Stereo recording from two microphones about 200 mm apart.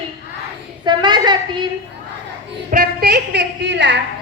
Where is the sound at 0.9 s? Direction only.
20° right (ahead or behind).